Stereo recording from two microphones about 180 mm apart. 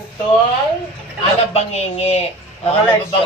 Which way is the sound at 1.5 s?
35° left (ahead or behind).